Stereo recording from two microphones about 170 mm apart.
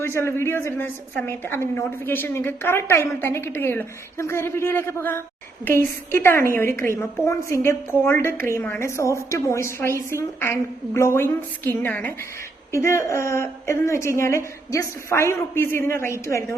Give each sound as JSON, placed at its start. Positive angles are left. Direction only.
{"t": 0.0, "sound": "a woman's voice", "side_deg": 15}